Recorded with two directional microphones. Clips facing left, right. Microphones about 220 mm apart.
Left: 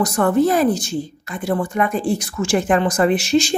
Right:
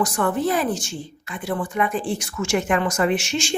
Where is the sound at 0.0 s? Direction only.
40° left (ahead or behind).